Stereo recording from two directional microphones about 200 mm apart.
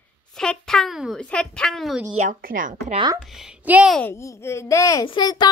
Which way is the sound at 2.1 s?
40° right (ahead or behind).